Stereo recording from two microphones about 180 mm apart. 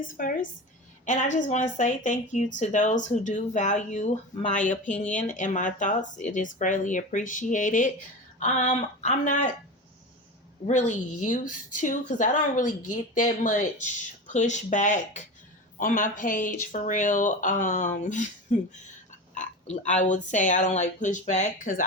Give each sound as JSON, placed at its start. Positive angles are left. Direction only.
{"t": 0.0, "sound": "a woman's voice", "side_deg": 50}
{"t": 10.7, "sound": "a woman's voice", "side_deg": 40}